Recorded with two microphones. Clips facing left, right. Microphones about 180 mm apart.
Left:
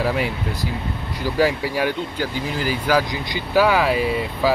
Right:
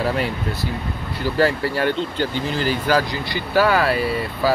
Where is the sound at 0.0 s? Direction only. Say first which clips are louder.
Even; 10° left (ahead or behind).